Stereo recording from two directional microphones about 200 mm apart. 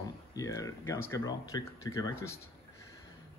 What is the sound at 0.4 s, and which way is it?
Speech, 15° left (ahead or behind).